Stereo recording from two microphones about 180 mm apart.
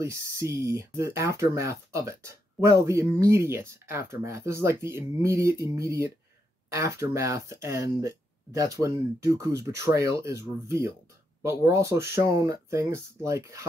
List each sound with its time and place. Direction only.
0.0 s speech: 15° right (ahead or behind)